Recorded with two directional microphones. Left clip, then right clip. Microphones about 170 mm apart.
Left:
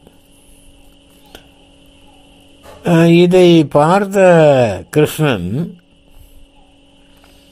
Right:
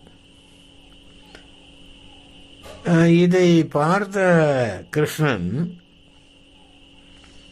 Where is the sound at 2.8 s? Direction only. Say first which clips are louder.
Left 7 dB; 20° left (ahead or behind).